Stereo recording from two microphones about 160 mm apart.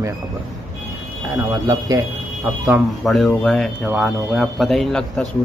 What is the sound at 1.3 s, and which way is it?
Speech, 20° right (ahead or behind).